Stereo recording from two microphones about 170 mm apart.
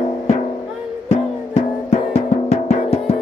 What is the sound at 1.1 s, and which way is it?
Music, 40° left (ahead or behind).